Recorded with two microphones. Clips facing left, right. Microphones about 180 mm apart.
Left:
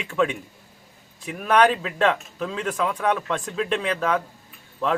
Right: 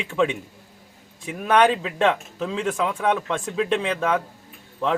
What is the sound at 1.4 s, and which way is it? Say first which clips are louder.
A man's voice: even; 15° right (ahead or behind).